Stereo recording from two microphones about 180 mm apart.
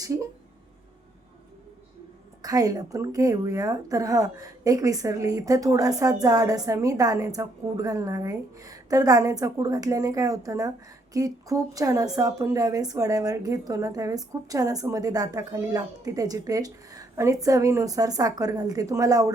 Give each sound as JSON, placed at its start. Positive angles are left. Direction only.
{"t": 2.4, "sound": "speech", "side_deg": -20}